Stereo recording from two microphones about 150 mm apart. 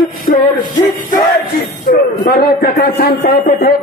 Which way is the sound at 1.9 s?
85° left.